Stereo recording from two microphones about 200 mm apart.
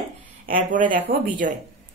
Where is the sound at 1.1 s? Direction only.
50° right (ahead or behind).